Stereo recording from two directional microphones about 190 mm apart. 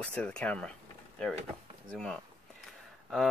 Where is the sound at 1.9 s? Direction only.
Centre (ahead or behind).